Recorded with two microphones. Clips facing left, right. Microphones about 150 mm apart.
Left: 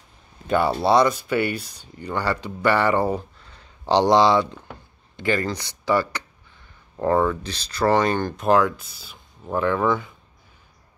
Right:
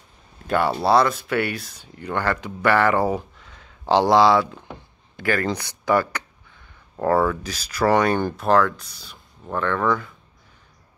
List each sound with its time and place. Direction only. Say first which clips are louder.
0.5 s speech: even; centre (ahead or behind)
7.0 s speech: even; 15° left (ahead or behind)
7.2 s speech: even; 10° right (ahead or behind)
8.4 s speech: left 2 dB; centre (ahead or behind)